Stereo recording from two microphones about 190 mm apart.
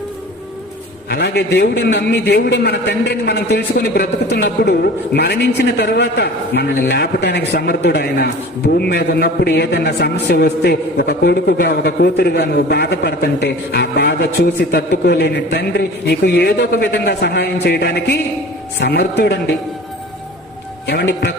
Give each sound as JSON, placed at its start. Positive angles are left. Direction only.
{"t": 1.1, "sound": "a man's voice", "side_deg": 60}
{"t": 20.8, "sound": "a man's voice", "side_deg": 60}